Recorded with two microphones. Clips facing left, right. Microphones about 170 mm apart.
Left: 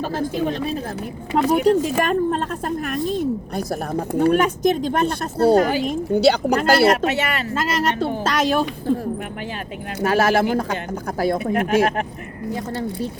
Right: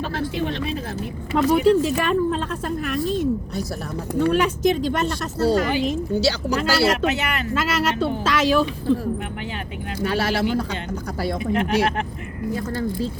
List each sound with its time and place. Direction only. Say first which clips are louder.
0.2 s speech: left 2 dB; 45° left (ahead or behind)
10.0 s speech: left 5 dB; 45° left (ahead or behind)